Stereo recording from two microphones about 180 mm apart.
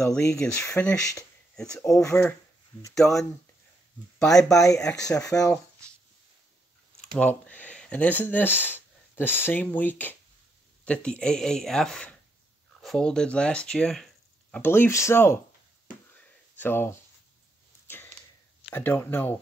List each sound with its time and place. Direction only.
0.2 s speech: 15° left (ahead or behind)
1.8 s speech: 15° left (ahead or behind)
2.9 s speech: centre (ahead or behind)
4.6 s speech: 20° left (ahead or behind)
7.2 s speech: 10° left (ahead or behind)
16.5 s speech: 10° left (ahead or behind)
17.8 s a sound: 10° left (ahead or behind)
18.7 s speech: 10° left (ahead or behind)